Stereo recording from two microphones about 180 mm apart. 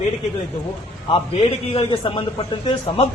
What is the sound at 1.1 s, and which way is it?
A man's voice, 30° left (ahead or behind).